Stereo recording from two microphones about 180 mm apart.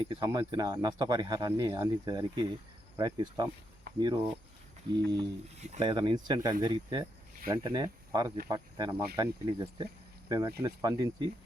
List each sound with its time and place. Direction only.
0.0 s speech: 25° right (ahead or behind)